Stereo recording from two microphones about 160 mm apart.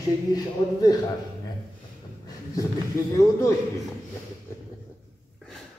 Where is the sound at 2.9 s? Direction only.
20° left (ahead or behind).